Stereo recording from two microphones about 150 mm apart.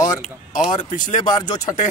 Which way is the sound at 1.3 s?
25° left (ahead or behind).